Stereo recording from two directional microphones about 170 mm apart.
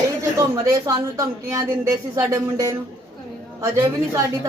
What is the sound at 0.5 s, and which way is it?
Speech, 20° right (ahead or behind).